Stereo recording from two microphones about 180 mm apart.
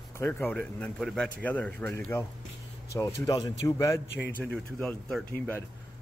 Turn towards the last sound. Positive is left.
turn(degrees=10)  # may be behind; listen again after turning